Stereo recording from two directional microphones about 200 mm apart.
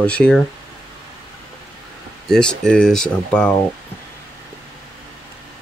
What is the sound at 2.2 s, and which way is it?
Speech, 5° left (ahead or behind).